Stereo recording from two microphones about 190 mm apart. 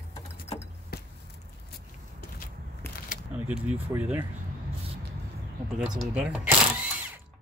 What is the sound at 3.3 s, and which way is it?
Speech, 5° right (ahead or behind).